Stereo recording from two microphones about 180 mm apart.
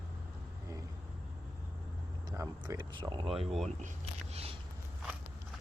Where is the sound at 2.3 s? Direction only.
20° right (ahead or behind).